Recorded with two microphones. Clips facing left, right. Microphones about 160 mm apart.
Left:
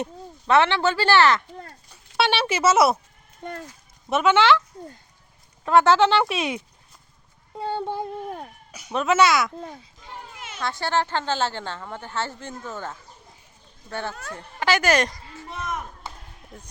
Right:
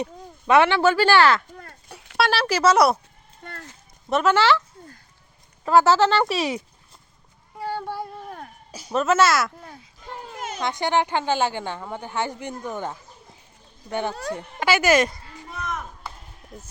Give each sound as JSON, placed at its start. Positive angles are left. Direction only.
{"t": 0.4, "sound": "a woman's voice", "side_deg": -10}
{"t": 1.9, "sound": "a sound", "side_deg": -75}
{"t": 2.1, "sound": "speech", "side_deg": 5}
{"t": 3.4, "sound": "speech", "side_deg": 15}
{"t": 4.1, "sound": "speech", "side_deg": 0}
{"t": 5.6, "sound": "speech", "side_deg": -5}
{"t": 7.6, "sound": "a sound", "side_deg": 20}
{"t": 8.9, "sound": "speech", "side_deg": 0}
{"t": 10.3, "sound": "a sound", "side_deg": -40}
{"t": 10.6, "sound": "a woman's voice", "side_deg": -20}
{"t": 15.4, "sound": "chop", "side_deg": 20}
{"t": 16.5, "sound": "speech", "side_deg": 0}